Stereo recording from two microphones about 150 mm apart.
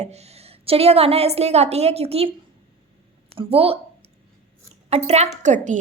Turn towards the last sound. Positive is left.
turn(degrees=-50)  # may be behind; listen again after turning